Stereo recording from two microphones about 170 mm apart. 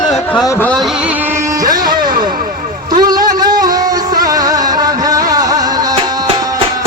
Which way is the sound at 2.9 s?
25° right (ahead or behind).